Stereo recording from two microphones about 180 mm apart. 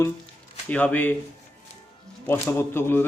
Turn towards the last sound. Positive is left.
turn(degrees=10)  # may be behind; listen again after turning